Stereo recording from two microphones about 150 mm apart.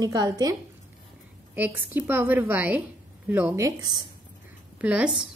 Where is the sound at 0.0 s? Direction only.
25° right (ahead or behind).